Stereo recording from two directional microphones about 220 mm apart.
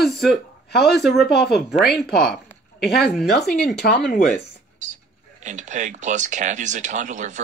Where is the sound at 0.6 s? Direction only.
45° left (ahead or behind).